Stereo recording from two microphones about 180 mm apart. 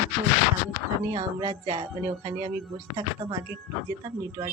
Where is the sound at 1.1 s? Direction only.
25° right (ahead or behind).